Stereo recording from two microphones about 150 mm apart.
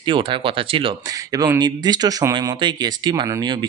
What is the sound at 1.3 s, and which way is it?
Speech, 25° right (ahead or behind).